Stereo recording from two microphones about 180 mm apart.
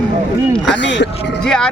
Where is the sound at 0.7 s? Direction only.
80° left.